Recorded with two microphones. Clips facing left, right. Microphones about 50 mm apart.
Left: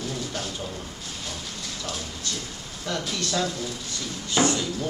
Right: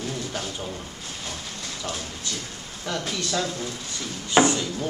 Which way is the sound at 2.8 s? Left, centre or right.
Centre.